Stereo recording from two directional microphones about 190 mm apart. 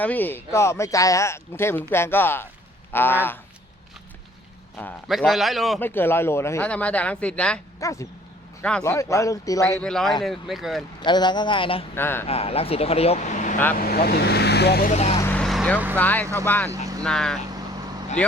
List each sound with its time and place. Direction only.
0.0 s speech: 10° left (ahead or behind)
4.8 s a man's voice: centre (ahead or behind)
5.8 s speech: 10° left (ahead or behind)
7.8 s a sound: 15° left (ahead or behind)
8.8 s speech: 15° left (ahead or behind)
9.8 s a man's voice: 5° left (ahead or behind)
11.0 s a man's voice: 25° left (ahead or behind)
11.9 s speech: 10° left (ahead or behind)
12.3 s speech: 30° left (ahead or behind)
13.7 s speech: 50° left (ahead or behind)
14.8 s speech: 35° left (ahead or behind)
15.3 s vehicle: 5° left (ahead or behind)
16.0 s a man's voice: 10° left (ahead or behind)